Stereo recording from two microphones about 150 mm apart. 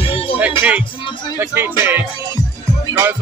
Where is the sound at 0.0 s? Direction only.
35° left (ahead or behind).